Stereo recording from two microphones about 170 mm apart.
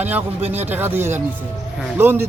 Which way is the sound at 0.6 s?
10° right (ahead or behind).